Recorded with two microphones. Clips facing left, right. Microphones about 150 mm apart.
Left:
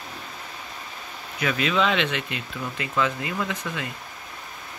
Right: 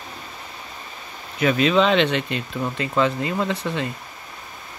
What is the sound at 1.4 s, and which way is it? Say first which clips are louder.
Speech: right 6 dB; 30° right (ahead or behind).